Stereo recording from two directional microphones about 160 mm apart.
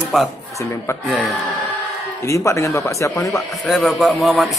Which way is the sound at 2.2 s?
20° left (ahead or behind).